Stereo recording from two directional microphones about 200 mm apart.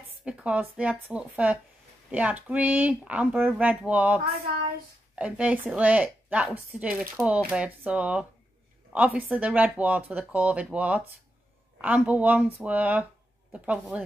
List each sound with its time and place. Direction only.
0.2 s a woman's voice: 5° right (ahead or behind)